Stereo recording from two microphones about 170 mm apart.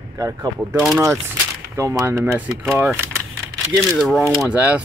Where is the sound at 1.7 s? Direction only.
15° right (ahead or behind).